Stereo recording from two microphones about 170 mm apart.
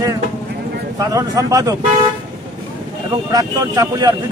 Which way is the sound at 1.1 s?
20° right (ahead or behind).